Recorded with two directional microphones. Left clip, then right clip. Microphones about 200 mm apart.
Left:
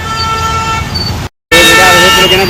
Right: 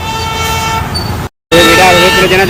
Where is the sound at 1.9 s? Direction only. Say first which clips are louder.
Left 1 dB; 10° left (ahead or behind).